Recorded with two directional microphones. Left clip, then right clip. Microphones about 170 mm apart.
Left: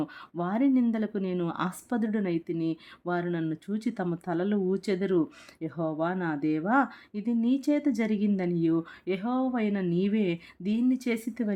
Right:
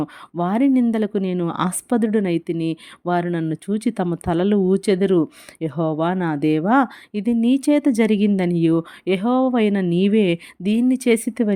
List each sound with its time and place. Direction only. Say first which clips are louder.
0.0 s speech: right 9 dB; 40° right (ahead or behind)